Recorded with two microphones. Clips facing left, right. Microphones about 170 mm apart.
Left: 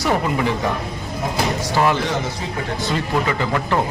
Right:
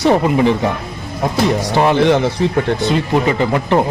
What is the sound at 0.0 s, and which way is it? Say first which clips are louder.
Speech: right 7 dB; 25° right (ahead or behind).